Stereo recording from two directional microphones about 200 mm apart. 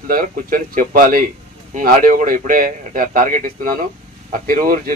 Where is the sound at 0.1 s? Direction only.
45° right (ahead or behind).